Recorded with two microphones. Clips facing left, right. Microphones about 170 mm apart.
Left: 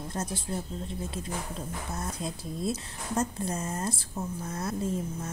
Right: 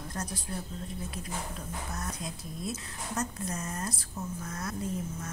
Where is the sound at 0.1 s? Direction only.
25° left (ahead or behind).